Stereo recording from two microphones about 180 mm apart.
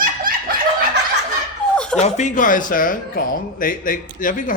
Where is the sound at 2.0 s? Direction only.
40° left (ahead or behind).